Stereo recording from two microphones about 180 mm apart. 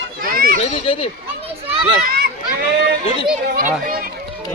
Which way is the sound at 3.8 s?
50° right (ahead or behind).